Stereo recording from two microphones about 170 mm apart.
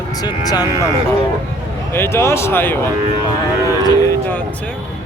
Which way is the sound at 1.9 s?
15° left (ahead or behind).